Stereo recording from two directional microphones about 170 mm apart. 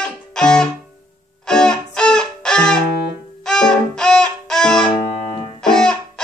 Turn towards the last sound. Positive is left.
turn(degrees=5)  # may be behind; listen again after turning